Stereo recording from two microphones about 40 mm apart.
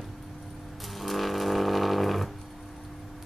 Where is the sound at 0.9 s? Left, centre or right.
Centre.